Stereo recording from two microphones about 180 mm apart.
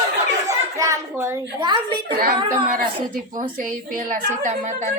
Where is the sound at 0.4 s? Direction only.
15° right (ahead or behind).